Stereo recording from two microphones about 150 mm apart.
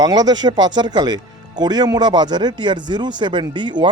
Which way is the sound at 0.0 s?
25° right (ahead or behind).